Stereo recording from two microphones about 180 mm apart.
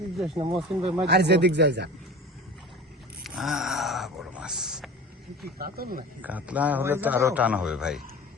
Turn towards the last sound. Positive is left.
turn(degrees=-5)  # may be behind; listen again after turning